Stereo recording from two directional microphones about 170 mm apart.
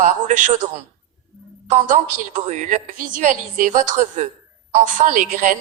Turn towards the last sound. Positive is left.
turn(degrees=-50)  # may be behind; listen again after turning